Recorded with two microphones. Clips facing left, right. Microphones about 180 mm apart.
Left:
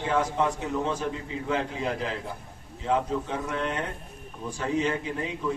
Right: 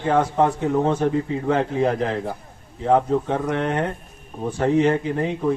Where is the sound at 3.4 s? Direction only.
75° right (ahead or behind).